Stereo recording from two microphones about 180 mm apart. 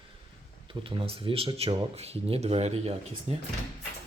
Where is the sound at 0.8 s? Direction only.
30° right (ahead or behind).